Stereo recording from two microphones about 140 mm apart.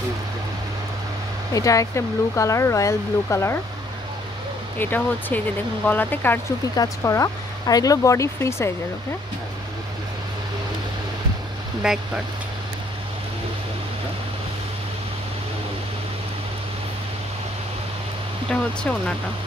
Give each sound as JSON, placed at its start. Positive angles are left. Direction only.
{"t": 1.5, "sound": "speech", "side_deg": 25}
{"t": 4.7, "sound": "speech", "side_deg": 15}
{"t": 11.8, "sound": "speech", "side_deg": -5}
{"t": 18.5, "sound": "speech", "side_deg": 5}